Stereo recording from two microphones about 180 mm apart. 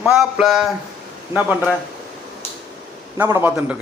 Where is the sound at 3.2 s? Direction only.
15° right (ahead or behind).